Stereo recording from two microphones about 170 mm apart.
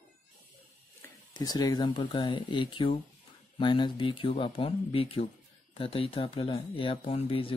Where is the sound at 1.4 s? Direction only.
25° left (ahead or behind).